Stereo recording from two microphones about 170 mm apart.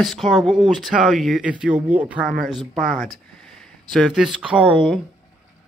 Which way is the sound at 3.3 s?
5° left (ahead or behind).